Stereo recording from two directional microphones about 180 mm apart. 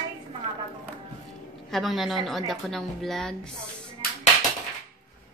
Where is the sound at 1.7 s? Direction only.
Centre (ahead or behind).